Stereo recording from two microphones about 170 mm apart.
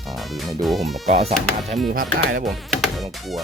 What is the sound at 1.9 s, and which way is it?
Speech, 55° right (ahead or behind).